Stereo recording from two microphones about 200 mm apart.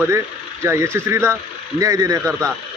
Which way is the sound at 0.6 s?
15° right (ahead or behind).